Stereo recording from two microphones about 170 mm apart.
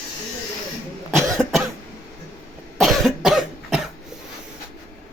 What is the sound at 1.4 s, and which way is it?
Cough, centre (ahead or behind).